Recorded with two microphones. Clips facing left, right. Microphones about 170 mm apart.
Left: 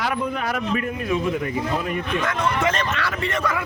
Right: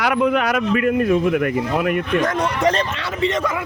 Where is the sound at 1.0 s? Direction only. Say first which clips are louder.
Right 6 dB; 55° right (ahead or behind).